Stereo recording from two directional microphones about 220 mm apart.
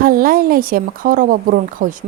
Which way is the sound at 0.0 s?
40° right (ahead or behind).